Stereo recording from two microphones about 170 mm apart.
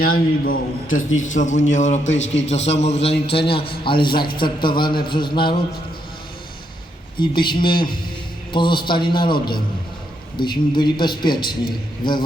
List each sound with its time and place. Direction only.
0.0 s a man's voice: 60° left (ahead or behind); by 5.5 s 30° left (ahead or behind)
7.2 s a man's voice: 25° left (ahead or behind)
12.0 s a man's voice: 55° left (ahead or behind)